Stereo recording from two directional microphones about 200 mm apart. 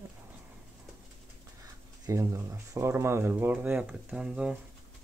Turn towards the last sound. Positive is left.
turn(degrees=-5)  # may be behind; listen again after turning